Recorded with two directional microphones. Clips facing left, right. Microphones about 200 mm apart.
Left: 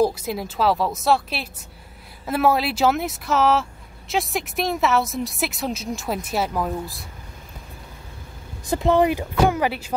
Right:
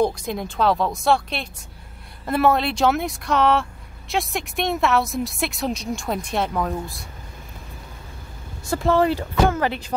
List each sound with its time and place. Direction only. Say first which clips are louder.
0.0 s speech: left 1 dB; 5° left (ahead or behind)
8.6 s speech: left 1 dB; 20° left (ahead or behind)